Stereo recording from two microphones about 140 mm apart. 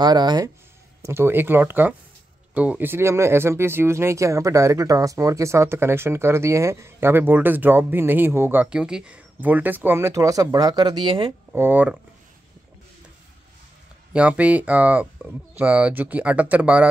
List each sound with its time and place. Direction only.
0.0 s speech: 30° right (ahead or behind)
1.0 s speech: 15° right (ahead or behind); by 11.3 s 40° right (ahead or behind)
11.5 s speech: 15° right (ahead or behind)
14.1 s speech: 10° right (ahead or behind)